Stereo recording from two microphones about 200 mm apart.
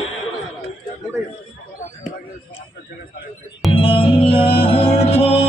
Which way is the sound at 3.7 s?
25° left (ahead or behind).